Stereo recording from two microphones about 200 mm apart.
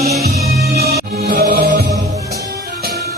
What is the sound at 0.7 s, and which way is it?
Music, 50° right (ahead or behind).